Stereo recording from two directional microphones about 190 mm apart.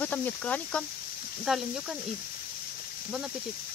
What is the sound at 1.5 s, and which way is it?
Speech, 5° right (ahead or behind).